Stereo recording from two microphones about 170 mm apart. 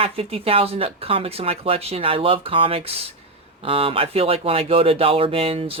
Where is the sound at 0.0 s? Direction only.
35° right (ahead or behind).